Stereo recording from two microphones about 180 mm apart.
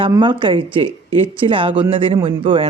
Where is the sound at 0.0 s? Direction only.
25° right (ahead or behind).